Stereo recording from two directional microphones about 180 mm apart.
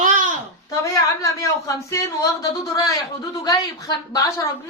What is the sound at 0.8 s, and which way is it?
A woman's voice, 20° left (ahead or behind).